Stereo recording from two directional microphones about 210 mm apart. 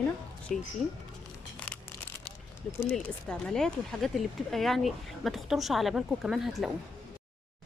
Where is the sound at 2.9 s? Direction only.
5° left (ahead or behind).